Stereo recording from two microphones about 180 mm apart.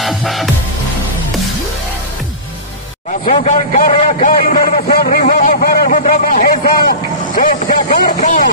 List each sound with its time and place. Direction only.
0.0 s music: centre (ahead or behind)
3.3 s a man's voice: 40° left (ahead or behind)
4.0 s vehicle: 40° left (ahead or behind)